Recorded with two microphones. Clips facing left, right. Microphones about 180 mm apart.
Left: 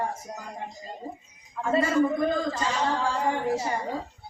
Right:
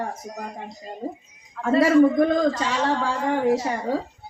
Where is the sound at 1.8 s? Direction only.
80° right.